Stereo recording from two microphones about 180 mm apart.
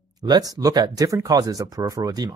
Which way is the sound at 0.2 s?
20° right (ahead or behind).